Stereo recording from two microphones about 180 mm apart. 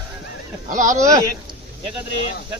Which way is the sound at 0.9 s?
20° right (ahead or behind).